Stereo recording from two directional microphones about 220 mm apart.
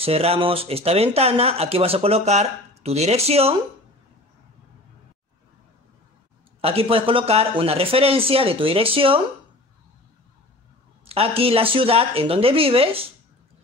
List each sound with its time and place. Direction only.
0.0 s speech: 25° right (ahead or behind)
6.6 s speech: 25° right (ahead or behind)
11.1 s speech: 25° right (ahead or behind)